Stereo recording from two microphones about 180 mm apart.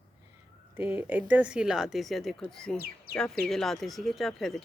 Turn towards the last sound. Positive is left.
turn(degrees=0)  # may be behind; listen again after turning